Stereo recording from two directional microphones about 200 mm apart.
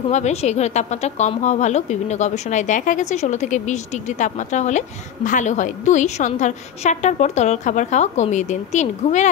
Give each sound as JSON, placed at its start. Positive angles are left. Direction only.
{"t": 0.1, "sound": "speech", "side_deg": 35}